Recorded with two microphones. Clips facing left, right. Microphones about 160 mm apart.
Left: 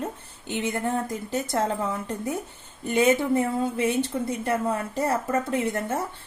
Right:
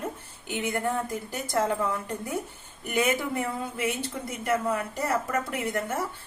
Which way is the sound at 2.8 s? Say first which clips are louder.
Left 5 dB; 25° left (ahead or behind).